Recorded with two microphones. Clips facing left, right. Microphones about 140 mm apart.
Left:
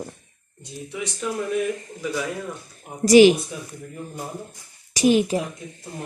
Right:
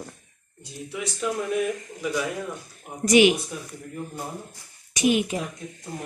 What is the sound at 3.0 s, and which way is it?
Speech, 35° left (ahead or behind).